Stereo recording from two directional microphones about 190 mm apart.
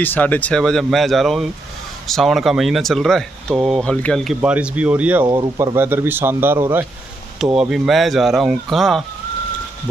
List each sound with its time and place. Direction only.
0.0 s speech: 10° left (ahead or behind); by 5.2 s 10° right (ahead or behind)
5.2 s a man's voice: 20° right (ahead or behind); by 9.0 s centre (ahead or behind)